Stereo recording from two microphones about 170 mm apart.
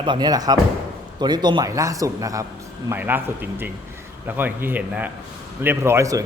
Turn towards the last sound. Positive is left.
turn(degrees=-20)  # may be behind; listen again after turning